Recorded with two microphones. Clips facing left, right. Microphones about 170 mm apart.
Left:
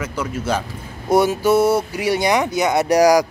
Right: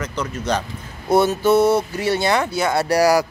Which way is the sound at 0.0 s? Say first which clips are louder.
Left 1 dB; 5° left (ahead or behind).